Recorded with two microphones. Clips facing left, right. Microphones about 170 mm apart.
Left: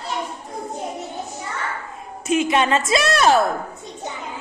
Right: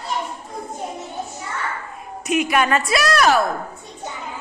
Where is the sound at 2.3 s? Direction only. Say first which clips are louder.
Left 1 dB; 25° left (ahead or behind).